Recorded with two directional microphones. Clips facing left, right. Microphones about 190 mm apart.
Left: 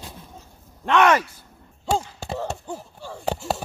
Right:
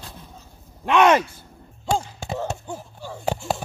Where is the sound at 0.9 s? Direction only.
20° right (ahead or behind).